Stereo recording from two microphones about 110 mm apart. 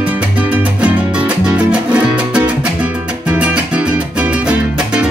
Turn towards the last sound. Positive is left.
turn(degrees=-10)  # may be behind; listen again after turning